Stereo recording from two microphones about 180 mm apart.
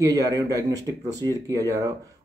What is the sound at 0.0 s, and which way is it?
Speech, 20° right (ahead or behind).